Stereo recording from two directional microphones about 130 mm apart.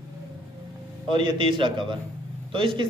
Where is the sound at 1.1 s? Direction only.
40° right (ahead or behind).